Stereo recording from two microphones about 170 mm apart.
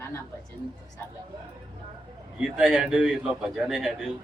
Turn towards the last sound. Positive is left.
turn(degrees=0)  # may be behind; listen again after turning